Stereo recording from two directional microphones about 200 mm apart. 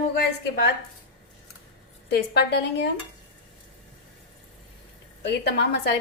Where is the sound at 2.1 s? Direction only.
55° left (ahead or behind).